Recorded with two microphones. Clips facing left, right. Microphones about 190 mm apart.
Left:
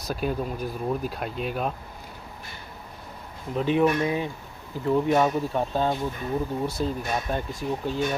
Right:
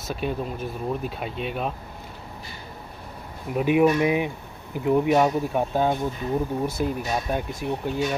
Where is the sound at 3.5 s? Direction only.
10° right (ahead or behind).